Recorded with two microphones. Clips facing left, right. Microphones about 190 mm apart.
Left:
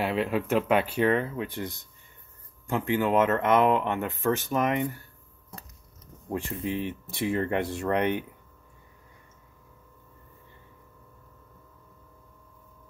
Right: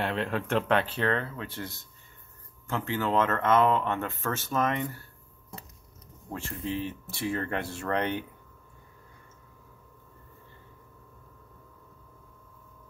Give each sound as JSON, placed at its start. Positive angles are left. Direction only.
{"t": 0.0, "sound": "speech", "side_deg": 5}
{"t": 6.3, "sound": "speech", "side_deg": 15}